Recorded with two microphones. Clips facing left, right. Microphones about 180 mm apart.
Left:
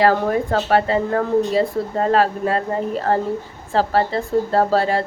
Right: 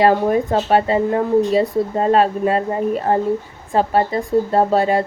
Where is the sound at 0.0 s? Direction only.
20° right (ahead or behind).